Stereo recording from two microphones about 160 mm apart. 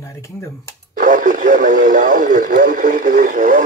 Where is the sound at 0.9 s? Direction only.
60° right (ahead or behind).